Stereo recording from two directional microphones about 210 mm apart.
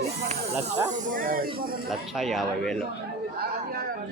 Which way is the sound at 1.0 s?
40° right (ahead or behind).